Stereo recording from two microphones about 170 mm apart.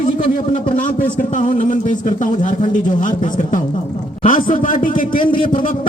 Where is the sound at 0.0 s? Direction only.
50° left (ahead or behind).